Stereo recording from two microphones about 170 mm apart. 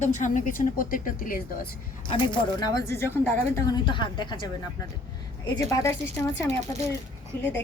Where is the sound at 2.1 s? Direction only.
25° left (ahead or behind).